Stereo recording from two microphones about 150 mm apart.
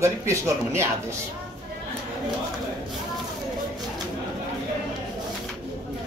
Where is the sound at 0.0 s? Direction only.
20° right (ahead or behind).